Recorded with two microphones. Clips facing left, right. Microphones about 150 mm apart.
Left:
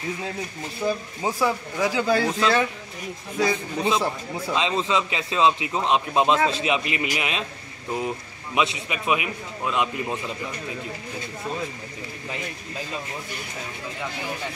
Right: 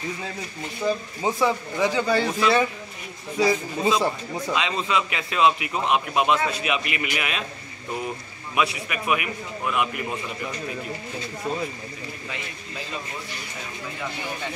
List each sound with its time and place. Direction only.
0.8 s speech: centre (ahead or behind)
4.6 s a man's voice: 25° left (ahead or behind)
8.5 s a man's voice: 20° left (ahead or behind)